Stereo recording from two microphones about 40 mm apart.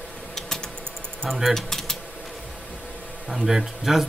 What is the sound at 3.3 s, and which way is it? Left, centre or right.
Speech, centre.